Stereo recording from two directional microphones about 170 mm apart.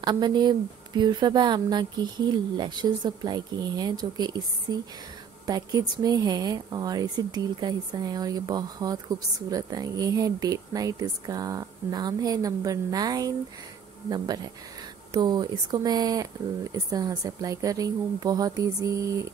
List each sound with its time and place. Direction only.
0.0 s speech: 25° right (ahead or behind)